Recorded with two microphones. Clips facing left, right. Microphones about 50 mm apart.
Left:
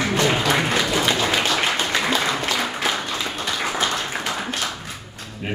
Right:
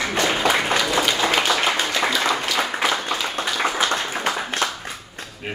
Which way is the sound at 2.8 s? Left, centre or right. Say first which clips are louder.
Right 2 dB; right.